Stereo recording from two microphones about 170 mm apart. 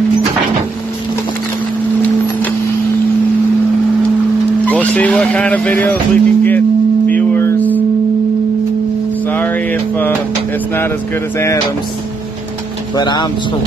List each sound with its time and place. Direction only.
4.6 s speech: 10° left (ahead or behind)
7.1 s a sound: 10° left (ahead or behind)
9.3 s mantra: 10° left (ahead or behind)
12.9 s speech: 25° left (ahead or behind)